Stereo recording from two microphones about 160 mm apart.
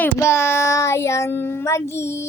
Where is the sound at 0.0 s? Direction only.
15° left (ahead or behind).